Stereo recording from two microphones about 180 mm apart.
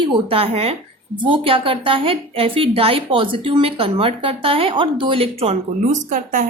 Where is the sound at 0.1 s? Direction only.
30° right (ahead or behind).